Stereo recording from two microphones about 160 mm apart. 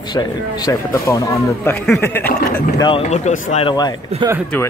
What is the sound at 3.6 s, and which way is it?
Speech, 25° left (ahead or behind).